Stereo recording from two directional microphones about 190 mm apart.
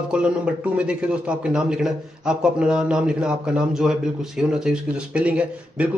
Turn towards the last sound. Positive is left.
turn(degrees=-5)  # may be behind; listen again after turning